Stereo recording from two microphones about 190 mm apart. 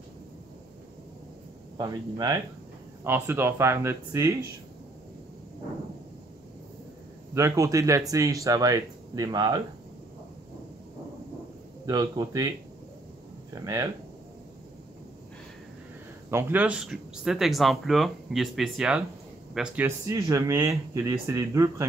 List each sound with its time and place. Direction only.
1.8 s speech: 20° right (ahead or behind)
7.3 s speech: 15° right (ahead or behind)
11.8 s speech: 20° right (ahead or behind)
13.6 s speech: 15° right (ahead or behind)
16.3 s speech: 10° right (ahead or behind)
20.1 s speech: 15° right (ahead or behind)